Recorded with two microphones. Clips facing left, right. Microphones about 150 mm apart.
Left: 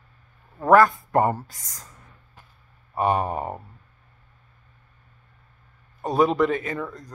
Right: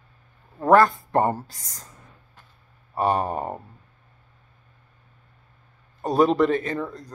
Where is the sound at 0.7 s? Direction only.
30° right (ahead or behind).